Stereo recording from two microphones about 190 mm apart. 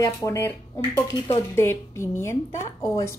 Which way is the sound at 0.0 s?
15° left (ahead or behind).